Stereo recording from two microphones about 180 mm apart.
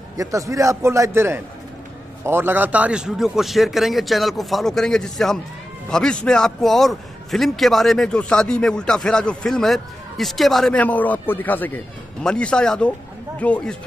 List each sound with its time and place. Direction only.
0.2 s a man's voice: 20° right (ahead or behind); by 13.7 s 5° left (ahead or behind)